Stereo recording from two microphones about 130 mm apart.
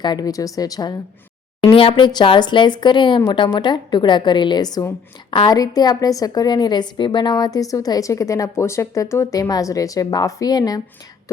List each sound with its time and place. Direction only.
0.0 s a woman's voice: 30° left (ahead or behind)
1.7 s a woman's voice: 45° left (ahead or behind)